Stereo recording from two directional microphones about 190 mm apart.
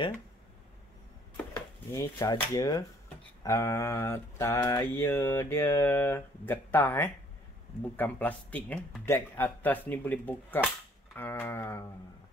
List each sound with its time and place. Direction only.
1.9 s speech: 20° left (ahead or behind)
3.4 s mantra: 15° left (ahead or behind)